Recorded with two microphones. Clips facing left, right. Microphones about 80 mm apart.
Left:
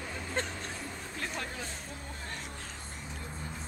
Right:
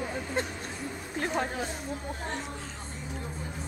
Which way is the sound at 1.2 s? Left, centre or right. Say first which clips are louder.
Right 9 dB; right.